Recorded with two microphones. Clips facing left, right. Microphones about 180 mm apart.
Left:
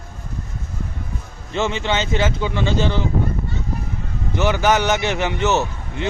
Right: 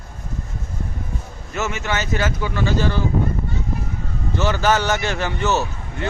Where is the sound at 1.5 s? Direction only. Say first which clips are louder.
Left 3 dB; 25° left (ahead or behind).